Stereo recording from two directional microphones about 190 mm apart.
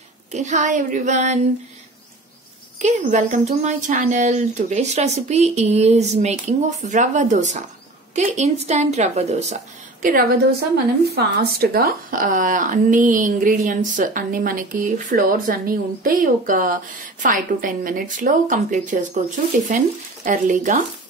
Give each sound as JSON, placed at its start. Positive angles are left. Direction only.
{"t": 0.3, "sound": "speech", "side_deg": -40}
{"t": 2.8, "sound": "speech", "side_deg": -40}
{"t": 10.0, "sound": "speech", "side_deg": -50}
{"t": 20.2, "sound": "speech", "side_deg": -40}